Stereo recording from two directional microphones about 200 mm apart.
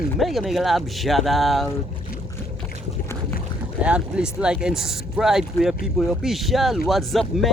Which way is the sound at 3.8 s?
5° right (ahead or behind).